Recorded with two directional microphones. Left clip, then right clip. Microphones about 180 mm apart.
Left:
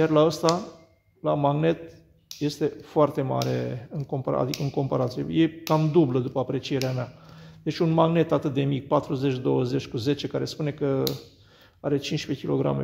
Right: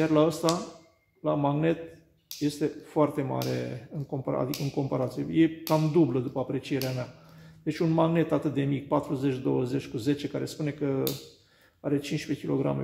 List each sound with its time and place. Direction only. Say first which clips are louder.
0.0 s a man's voice: left 4 dB; 30° left (ahead or behind)